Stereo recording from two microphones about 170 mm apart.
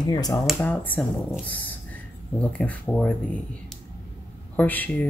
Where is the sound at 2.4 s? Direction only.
10° left (ahead or behind).